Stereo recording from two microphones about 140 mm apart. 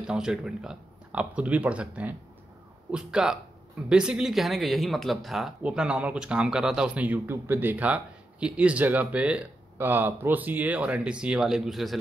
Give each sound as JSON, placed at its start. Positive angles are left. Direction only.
{"t": 0.0, "sound": "a man's voice", "side_deg": -5}